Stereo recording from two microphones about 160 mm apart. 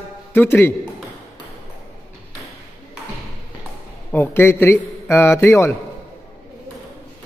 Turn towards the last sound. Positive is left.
turn(degrees=15)  # may be behind; listen again after turning